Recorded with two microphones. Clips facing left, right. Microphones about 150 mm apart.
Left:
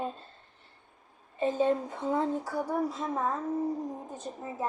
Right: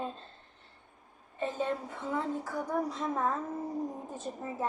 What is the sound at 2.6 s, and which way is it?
A woman's voice, centre (ahead or behind).